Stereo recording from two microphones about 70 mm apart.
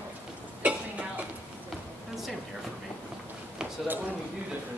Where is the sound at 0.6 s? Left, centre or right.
Centre.